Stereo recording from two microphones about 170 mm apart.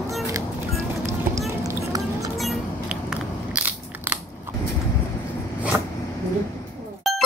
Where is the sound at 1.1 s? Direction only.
20° right (ahead or behind).